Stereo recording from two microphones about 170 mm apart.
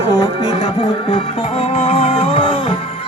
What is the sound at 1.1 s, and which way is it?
Music, 30° left (ahead or behind).